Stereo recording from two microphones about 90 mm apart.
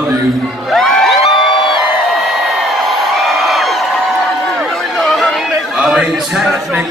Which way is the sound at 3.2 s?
Centre (ahead or behind).